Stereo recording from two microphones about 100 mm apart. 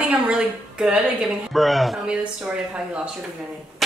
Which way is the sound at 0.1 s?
10° right (ahead or behind).